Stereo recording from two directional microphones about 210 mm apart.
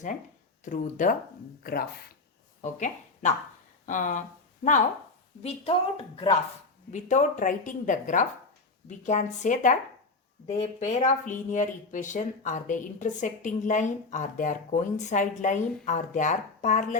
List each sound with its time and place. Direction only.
0.6 s speech: 40° left (ahead or behind)
2.6 s a woman's voice: 35° left (ahead or behind)
6.9 s speech: 35° left (ahead or behind)